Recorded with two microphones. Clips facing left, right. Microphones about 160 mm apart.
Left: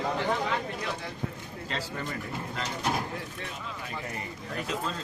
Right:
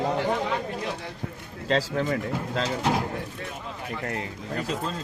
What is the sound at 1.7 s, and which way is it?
Speech, 90° right.